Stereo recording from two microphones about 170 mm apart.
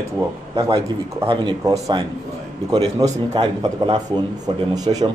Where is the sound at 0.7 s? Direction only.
30° right (ahead or behind).